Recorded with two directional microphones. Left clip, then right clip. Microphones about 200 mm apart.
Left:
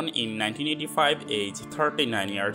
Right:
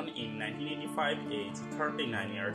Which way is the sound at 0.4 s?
40° left (ahead or behind).